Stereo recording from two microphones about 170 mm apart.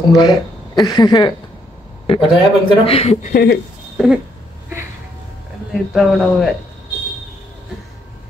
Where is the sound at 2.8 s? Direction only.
35° left (ahead or behind).